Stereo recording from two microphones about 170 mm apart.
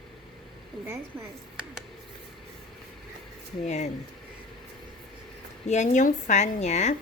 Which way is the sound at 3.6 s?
40° left (ahead or behind).